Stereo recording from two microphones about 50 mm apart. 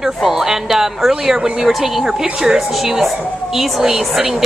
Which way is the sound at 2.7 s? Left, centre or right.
Centre.